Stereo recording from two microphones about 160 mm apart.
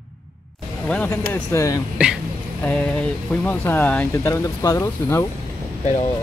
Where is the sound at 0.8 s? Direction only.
5° left (ahead or behind).